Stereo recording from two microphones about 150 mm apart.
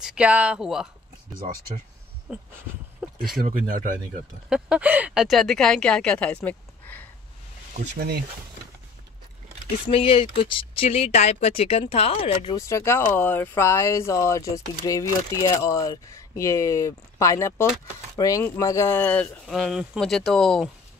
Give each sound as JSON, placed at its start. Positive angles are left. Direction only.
{"t": 0.0, "sound": "speech", "side_deg": -5}
{"t": 2.3, "sound": "a sound", "side_deg": -5}
{"t": 3.3, "sound": "speech", "side_deg": -70}
{"t": 4.5, "sound": "speech", "side_deg": -5}
{"t": 9.8, "sound": "speech", "side_deg": 40}
{"t": 12.5, "sound": "speech", "side_deg": 20}
{"t": 19.4, "sound": "speech", "side_deg": 0}